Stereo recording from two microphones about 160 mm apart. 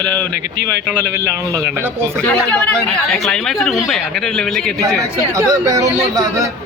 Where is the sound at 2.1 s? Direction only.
10° left (ahead or behind).